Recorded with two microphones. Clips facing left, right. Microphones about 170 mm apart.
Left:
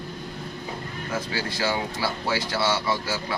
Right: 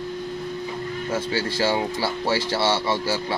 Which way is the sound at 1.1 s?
30° right (ahead or behind).